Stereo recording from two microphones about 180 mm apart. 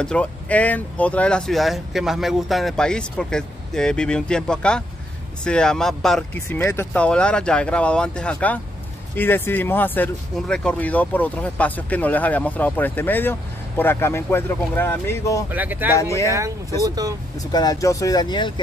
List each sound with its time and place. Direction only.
0.0 s speech: 5° left (ahead or behind)
6.6 s speech: 15° left (ahead or behind)
15.5 s speech: 10° right (ahead or behind)
16.0 s speech: 15° left (ahead or behind)
16.3 s speech: 15° right (ahead or behind)
17.4 s speech: 20° left (ahead or behind)